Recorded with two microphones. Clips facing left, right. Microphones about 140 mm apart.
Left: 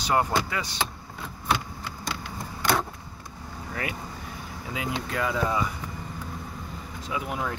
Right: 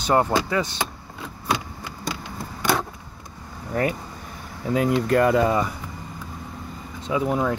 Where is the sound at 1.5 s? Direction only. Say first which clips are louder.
Right 1 dB; 10° right (ahead or behind).